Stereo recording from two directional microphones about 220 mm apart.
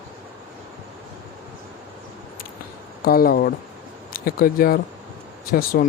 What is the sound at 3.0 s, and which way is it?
Speech, 40° left (ahead or behind).